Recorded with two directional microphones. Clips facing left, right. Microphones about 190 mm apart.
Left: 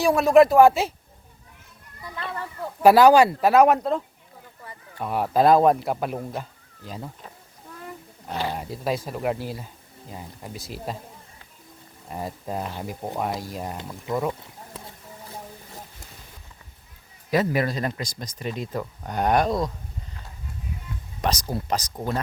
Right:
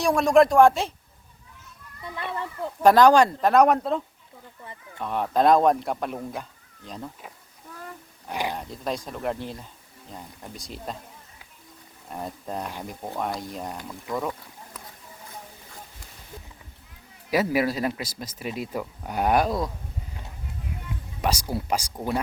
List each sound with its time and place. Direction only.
0.0 s speech: 5° left (ahead or behind)
2.1 s speech: 20° right (ahead or behind)
2.8 s speech: 10° left (ahead or behind)
8.3 s speech: 15° right (ahead or behind)
8.5 s speech: 5° left (ahead or behind)
12.0 s speech: 5° left (ahead or behind)
13.7 s speech: 25° left (ahead or behind)
14.7 s a sound: 30° left (ahead or behind)
17.3 s speech: 5° right (ahead or behind)
21.2 s speech: 10° right (ahead or behind)